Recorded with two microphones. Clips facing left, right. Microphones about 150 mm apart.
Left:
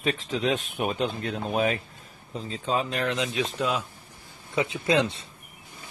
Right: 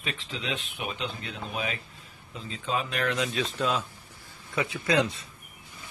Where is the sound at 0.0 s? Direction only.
40° left (ahead or behind).